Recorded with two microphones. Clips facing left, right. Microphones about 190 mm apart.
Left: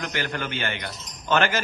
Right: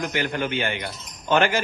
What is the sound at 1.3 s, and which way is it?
Speech, 15° right (ahead or behind).